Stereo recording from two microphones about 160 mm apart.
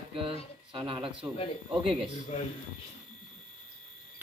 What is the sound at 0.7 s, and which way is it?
Speech, 30° right (ahead or behind).